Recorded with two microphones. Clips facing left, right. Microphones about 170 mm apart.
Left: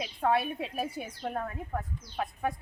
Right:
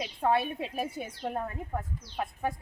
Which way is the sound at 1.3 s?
15° right (ahead or behind).